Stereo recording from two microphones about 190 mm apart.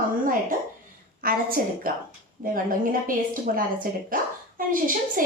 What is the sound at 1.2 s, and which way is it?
A woman's voice, 50° right (ahead or behind).